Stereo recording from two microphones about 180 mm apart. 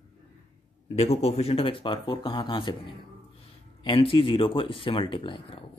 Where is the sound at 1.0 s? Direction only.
35° left (ahead or behind).